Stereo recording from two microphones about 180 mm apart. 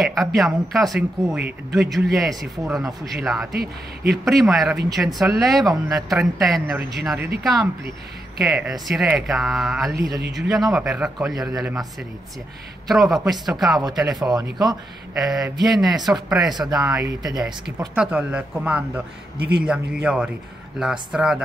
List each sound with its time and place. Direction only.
0.0 s speech: centre (ahead or behind)
3.5 s speech: 60° right (ahead or behind)
4.2 s speech: centre (ahead or behind)
8.4 s speech: centre (ahead or behind)
13.1 s speech: centre (ahead or behind)
14.3 s speech: 20° right (ahead or behind)
15.1 s speech: centre (ahead or behind)
16.4 s speech: 25° right (ahead or behind)
16.7 s speech: 5° right (ahead or behind)
17.2 s speech: 20° right (ahead or behind)
17.6 s speech: 5° right (ahead or behind)
19.3 s speech: 60° right (ahead or behind)
19.6 s speech: 5° right (ahead or behind)